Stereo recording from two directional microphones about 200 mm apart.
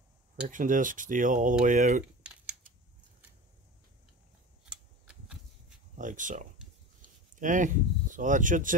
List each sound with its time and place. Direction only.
0.5 s speech: 40° right (ahead or behind)
4.6 s a sound: 5° right (ahead or behind)
5.9 s speech: 40° right (ahead or behind)